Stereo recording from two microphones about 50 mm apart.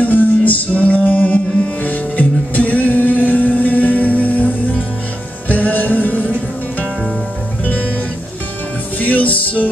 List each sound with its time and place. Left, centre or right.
0.0 s music: left
9.0 s music: left